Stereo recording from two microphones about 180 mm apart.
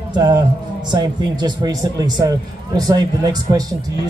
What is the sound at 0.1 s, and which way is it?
Speech, 20° right (ahead or behind).